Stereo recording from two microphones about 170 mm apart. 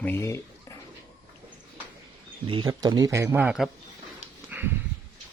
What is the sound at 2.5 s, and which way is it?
Speech, 25° right (ahead or behind).